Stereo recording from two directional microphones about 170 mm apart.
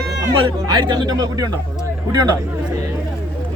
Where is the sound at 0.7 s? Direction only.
25° right (ahead or behind).